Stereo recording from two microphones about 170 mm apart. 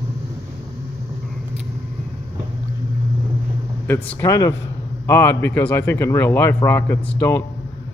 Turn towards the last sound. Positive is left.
turn(degrees=15)  # may be behind; listen again after turning